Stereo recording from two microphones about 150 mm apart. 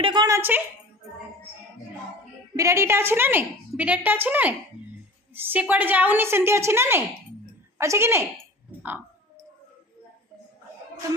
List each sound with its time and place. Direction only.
0.0 s a woman's voice: 30° right (ahead or behind)
2.6 s a woman's voice: 20° right (ahead or behind)